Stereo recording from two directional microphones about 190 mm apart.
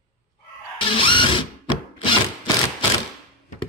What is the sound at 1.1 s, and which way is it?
Drill, 25° left (ahead or behind).